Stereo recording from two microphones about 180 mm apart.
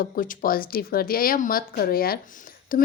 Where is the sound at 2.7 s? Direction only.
50° left (ahead or behind).